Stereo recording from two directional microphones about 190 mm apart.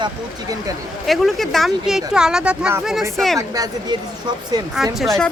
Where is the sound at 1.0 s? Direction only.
Centre (ahead or behind); by 3.9 s 20° right (ahead or behind).